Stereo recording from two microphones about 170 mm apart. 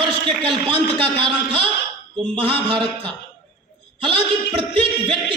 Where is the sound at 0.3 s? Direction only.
30° right (ahead or behind).